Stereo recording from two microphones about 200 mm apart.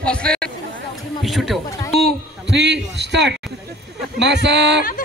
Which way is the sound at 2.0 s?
55° right (ahead or behind).